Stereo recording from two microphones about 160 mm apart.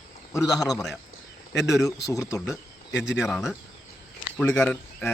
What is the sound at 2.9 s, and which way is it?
Speech, 90° left.